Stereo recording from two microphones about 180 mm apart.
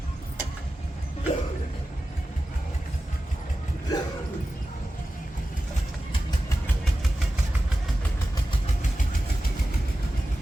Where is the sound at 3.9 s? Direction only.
20° left (ahead or behind).